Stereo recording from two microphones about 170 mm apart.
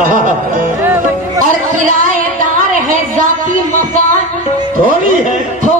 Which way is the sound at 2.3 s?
50° right (ahead or behind).